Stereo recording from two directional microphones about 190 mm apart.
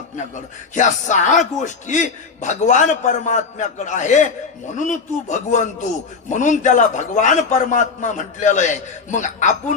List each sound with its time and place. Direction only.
0.7 s a man's voice: 40° left (ahead or behind)